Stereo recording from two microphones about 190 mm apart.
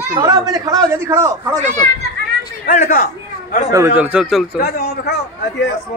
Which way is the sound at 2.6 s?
45° left (ahead or behind).